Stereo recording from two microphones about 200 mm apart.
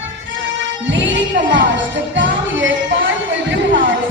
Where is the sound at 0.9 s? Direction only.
65° right (ahead or behind).